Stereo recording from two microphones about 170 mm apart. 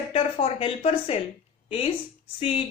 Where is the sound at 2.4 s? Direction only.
35° left (ahead or behind).